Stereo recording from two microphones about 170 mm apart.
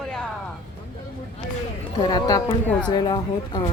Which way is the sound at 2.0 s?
25° left (ahead or behind).